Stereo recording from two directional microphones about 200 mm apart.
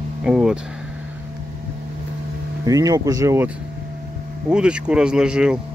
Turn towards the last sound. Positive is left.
turn(degrees=-5)  # may be behind; listen again after turning